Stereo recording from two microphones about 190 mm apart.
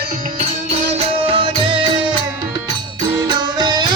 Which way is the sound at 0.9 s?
30° right (ahead or behind).